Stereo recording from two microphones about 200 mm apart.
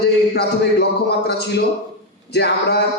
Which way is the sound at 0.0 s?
55° left (ahead or behind).